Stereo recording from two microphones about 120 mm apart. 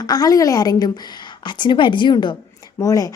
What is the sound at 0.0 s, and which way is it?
A woman's voice, 30° left (ahead or behind).